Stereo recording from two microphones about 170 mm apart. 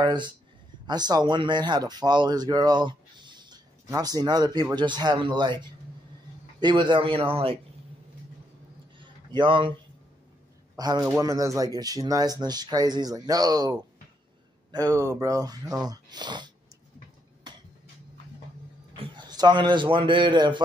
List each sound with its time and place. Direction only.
0.0 s speech: 25° right (ahead or behind)
9.3 s speech: 30° right (ahead or behind)
10.8 s speech: 25° right (ahead or behind)
15.0 s speech: 20° right (ahead or behind)
18.9 s a man's voice: 25° right (ahead or behind)